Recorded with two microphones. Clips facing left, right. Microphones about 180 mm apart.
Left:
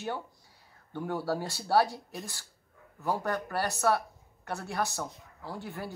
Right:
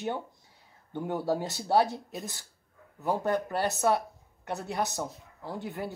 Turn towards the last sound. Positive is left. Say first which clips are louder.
# right 3 dB
turn(degrees=-20)  # may be behind; listen again after turning